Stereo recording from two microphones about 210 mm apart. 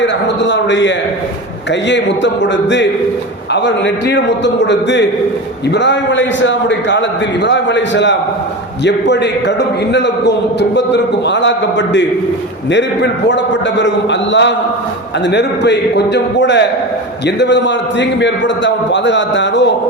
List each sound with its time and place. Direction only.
0.0 s a man's voice: 55° left (ahead or behind)